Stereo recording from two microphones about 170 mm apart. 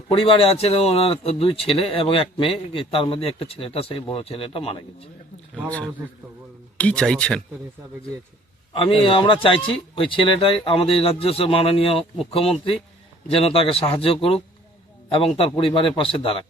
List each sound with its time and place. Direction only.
0.1 s speech: 35° left (ahead or behind)
5.6 s a man's voice: 10° left (ahead or behind)
8.7 s speech: 30° left (ahead or behind)